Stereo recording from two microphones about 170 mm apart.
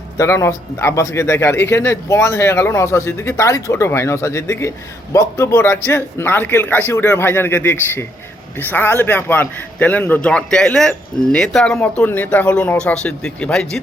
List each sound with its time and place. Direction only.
0.2 s a man's voice: 15° left (ahead or behind)